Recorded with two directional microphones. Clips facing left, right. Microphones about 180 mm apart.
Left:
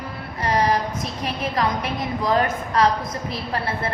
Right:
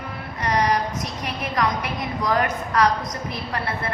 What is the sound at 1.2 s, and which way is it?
A woman's voice, 30° left (ahead or behind).